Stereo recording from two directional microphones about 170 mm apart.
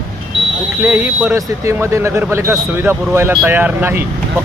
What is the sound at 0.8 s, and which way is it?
Speech, 10° right (ahead or behind).